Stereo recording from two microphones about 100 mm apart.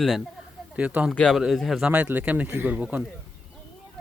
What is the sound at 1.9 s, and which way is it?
A man's voice, 15° right (ahead or behind).